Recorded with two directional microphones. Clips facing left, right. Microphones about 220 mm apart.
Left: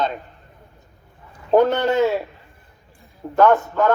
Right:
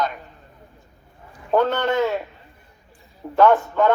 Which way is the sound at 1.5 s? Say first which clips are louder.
Left 3 dB; 10° left (ahead or behind).